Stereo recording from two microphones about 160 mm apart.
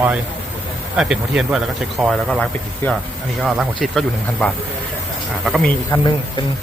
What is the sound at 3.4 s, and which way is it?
Speech, centre (ahead or behind).